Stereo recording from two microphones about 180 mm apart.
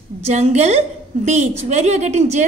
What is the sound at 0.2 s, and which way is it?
A woman's voice, 35° right (ahead or behind).